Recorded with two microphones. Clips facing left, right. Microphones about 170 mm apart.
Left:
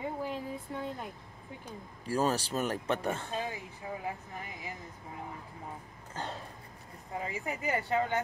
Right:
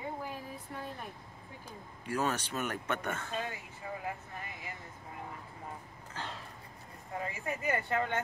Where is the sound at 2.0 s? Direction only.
35° left (ahead or behind).